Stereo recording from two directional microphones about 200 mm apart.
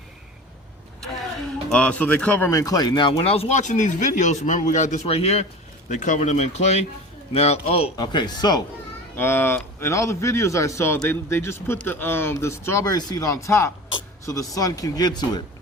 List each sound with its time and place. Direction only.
1.7 s speech: 5° left (ahead or behind)